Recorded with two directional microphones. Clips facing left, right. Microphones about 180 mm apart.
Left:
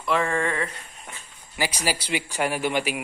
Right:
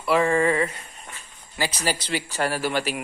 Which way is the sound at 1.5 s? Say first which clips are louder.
Right 1 dB; 10° left (ahead or behind).